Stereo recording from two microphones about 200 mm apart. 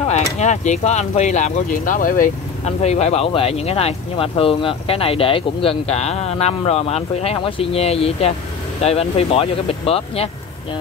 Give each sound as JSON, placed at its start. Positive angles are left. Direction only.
{"t": 0.1, "sound": "speech", "side_deg": 35}